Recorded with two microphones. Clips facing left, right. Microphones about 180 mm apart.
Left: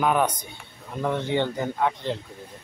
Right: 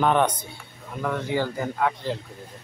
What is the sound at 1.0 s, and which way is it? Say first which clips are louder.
A man's voice: left 1 dB; 25° left (ahead or behind).